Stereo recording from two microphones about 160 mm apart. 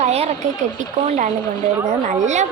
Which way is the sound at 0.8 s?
50° right (ahead or behind).